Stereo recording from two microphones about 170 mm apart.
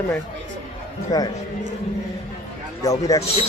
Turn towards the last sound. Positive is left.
turn(degrees=20)  # may be behind; listen again after turning